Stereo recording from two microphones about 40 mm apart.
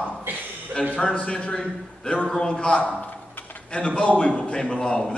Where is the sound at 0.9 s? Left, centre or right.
Left.